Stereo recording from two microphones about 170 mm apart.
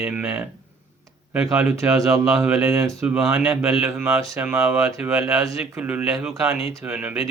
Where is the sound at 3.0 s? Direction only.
5° right (ahead or behind).